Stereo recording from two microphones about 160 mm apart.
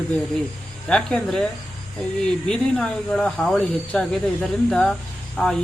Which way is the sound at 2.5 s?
5° left (ahead or behind).